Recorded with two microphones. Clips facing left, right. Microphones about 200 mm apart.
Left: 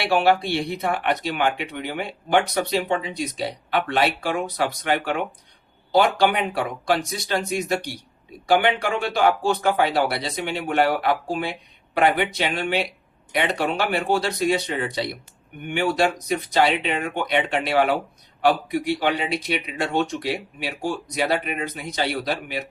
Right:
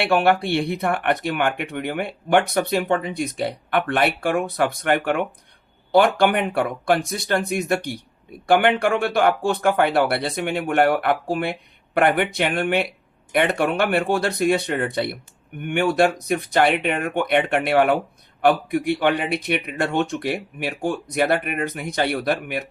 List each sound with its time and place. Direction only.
0.0 s speech: 55° right (ahead or behind)